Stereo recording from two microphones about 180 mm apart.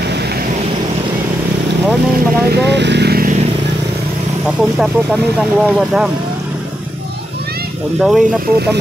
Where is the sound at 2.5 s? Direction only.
70° right (ahead or behind).